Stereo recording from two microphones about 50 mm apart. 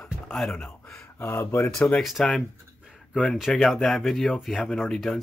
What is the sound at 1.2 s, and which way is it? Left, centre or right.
Speech, left.